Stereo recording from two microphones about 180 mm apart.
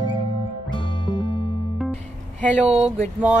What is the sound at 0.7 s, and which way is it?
Music, 25° left (ahead or behind).